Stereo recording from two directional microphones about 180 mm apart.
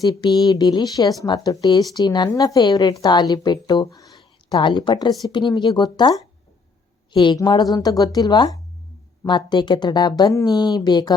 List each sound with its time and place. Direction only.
0.0 s speech: 20° left (ahead or behind)